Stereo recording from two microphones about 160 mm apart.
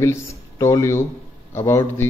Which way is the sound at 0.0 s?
20° left (ahead or behind).